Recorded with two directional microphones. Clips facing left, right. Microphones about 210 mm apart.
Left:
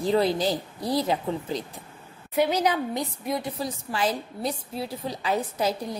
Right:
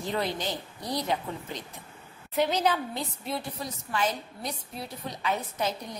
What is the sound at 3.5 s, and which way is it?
A woman's voice, 30° left (ahead or behind).